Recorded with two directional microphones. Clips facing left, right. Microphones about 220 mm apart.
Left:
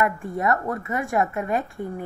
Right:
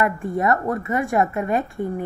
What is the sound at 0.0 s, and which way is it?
Speech, 30° right (ahead or behind).